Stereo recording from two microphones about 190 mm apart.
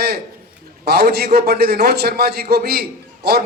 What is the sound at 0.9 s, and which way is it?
A man's voice, 55° right (ahead or behind).